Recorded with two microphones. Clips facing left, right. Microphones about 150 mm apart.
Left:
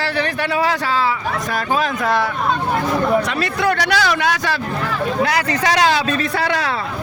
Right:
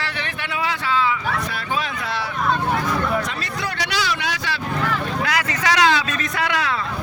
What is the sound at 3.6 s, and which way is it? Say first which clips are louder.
Speech: left 8 dB; 50° left (ahead or behind).